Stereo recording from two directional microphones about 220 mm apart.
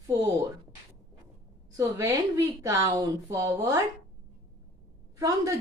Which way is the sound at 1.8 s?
15° right (ahead or behind).